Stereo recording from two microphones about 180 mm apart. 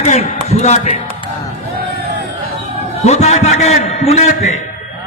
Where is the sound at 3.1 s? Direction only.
40° left (ahead or behind).